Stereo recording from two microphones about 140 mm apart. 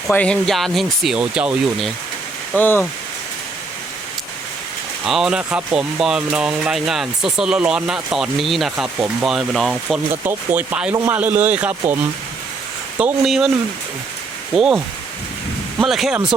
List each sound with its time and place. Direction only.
0.1 s speech: 10° left (ahead or behind)
2.6 s speech: 15° left (ahead or behind)
5.0 s speech: 5° right (ahead or behind)
10.1 s a man's voice: 15° right (ahead or behind)
13.2 s speech: centre (ahead or behind)
14.5 s speech: 5° right (ahead or behind)
15.8 s speech: 5° right (ahead or behind)